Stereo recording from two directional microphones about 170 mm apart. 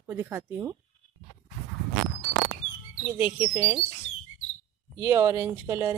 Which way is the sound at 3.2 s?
15° right (ahead or behind).